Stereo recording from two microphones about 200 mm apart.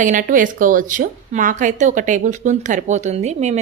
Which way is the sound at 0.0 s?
40° right (ahead or behind).